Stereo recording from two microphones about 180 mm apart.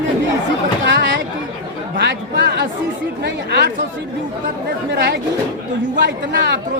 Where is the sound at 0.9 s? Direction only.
90° right.